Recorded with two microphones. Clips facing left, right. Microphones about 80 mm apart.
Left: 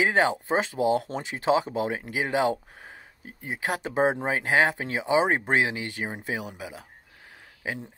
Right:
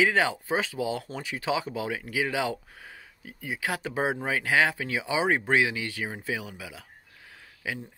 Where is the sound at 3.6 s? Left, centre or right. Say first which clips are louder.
Left 5 dB; left.